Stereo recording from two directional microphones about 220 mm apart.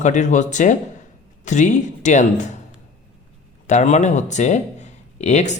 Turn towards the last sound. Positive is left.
turn(degrees=30)  # may be behind; listen again after turning